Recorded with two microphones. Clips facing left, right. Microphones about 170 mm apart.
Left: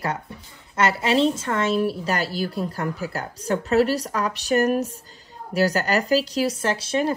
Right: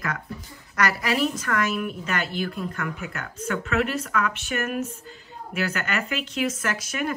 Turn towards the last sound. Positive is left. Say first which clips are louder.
# left 5 dB
turn(degrees=30)  # may be behind; listen again after turning